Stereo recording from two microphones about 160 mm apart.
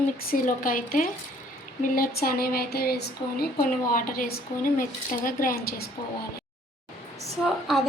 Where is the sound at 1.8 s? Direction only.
65° left (ahead or behind); by 3.1 s 85° left.